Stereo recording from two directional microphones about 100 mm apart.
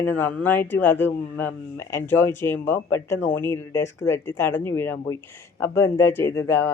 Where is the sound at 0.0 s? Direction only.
20° left (ahead or behind).